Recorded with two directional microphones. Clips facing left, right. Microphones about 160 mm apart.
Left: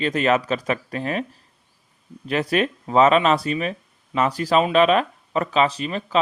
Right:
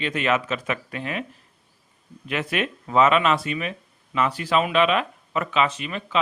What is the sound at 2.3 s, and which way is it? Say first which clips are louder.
Speech: left 5 dB; 35° left (ahead or behind).